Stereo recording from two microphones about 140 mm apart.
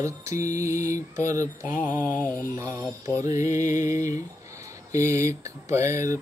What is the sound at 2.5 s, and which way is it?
Mantra, 20° right (ahead or behind).